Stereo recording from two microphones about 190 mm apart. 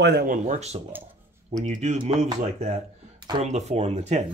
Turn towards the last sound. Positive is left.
turn(degrees=-35)  # may be behind; listen again after turning